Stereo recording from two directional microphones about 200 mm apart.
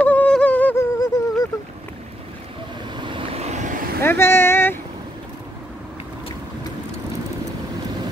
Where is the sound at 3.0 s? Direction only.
25° right (ahead or behind).